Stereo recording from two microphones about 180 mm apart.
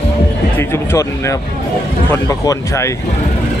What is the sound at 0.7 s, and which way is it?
Speech, 15° left (ahead or behind).